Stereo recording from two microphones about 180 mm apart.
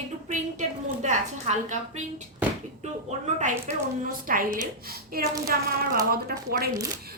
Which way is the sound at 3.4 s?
40° right (ahead or behind).